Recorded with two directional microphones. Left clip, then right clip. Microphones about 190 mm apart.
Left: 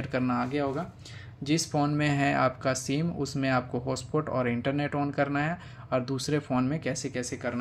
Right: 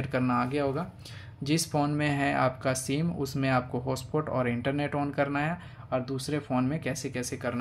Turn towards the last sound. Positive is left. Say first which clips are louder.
# even
turn(degrees=-5)  # may be behind; listen again after turning